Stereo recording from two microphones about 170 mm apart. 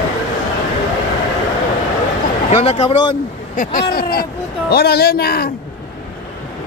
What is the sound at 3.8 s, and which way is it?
Speech, 65° left (ahead or behind).